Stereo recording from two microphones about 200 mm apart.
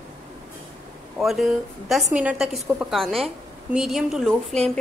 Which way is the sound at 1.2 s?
Centre (ahead or behind).